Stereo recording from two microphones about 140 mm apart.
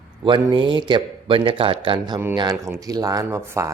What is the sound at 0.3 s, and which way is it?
Speech, 35° right (ahead or behind).